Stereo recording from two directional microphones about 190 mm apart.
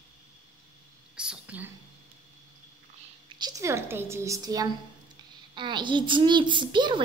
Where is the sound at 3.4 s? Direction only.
20° right (ahead or behind).